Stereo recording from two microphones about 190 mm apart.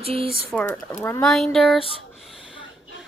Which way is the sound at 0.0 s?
30° right (ahead or behind).